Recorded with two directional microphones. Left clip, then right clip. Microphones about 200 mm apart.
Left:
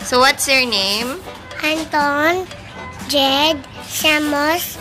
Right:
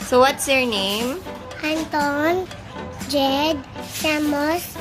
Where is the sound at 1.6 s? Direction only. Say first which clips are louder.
Left 5 dB; 5° right (ahead or behind).